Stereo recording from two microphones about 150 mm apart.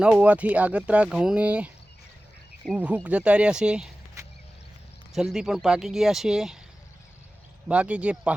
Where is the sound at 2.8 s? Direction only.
10° right (ahead or behind).